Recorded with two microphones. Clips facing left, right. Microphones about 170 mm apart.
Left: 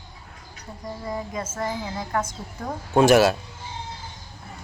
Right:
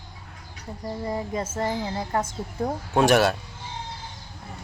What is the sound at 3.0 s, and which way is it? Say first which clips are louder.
Speech: left 3 dB; centre (ahead or behind).